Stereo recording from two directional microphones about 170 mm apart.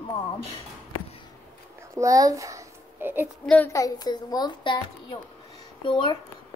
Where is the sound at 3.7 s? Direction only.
20° left (ahead or behind).